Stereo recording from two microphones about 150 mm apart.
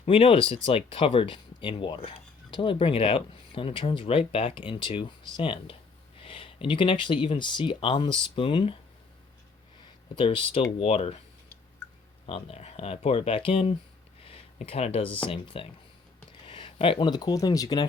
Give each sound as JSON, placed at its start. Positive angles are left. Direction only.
{"t": 0.0, "sound": "speech", "side_deg": 40}
{"t": 10.2, "sound": "speech", "side_deg": 35}
{"t": 12.2, "sound": "speech", "side_deg": 40}